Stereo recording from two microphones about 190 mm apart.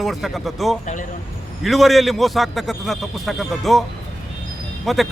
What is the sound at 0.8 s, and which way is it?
Speech, 40° left (ahead or behind).